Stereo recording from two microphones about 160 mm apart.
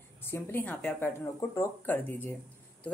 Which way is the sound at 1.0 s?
15° left (ahead or behind).